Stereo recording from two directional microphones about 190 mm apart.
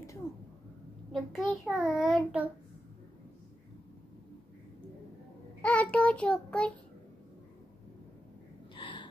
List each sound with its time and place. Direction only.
1.1 s child singing: centre (ahead or behind)
5.6 s child singing: 5° left (ahead or behind)
8.7 s a sound: 25° left (ahead or behind)